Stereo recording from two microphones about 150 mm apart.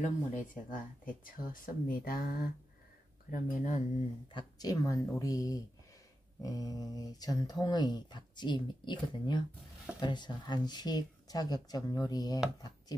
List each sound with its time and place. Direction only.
0.3 s speech: 65° left (ahead or behind); by 2.5 s 80° left
3.3 s speech: 65° left (ahead or behind)
4.3 s speech: 30° left (ahead or behind)